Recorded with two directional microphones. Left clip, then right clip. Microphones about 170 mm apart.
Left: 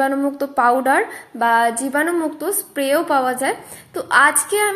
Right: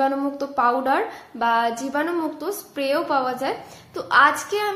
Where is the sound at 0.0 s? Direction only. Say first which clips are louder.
Left 3 dB; 25° left (ahead or behind).